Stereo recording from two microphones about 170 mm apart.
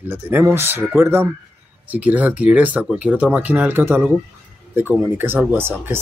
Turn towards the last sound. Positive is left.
turn(degrees=-15)  # may be behind; listen again after turning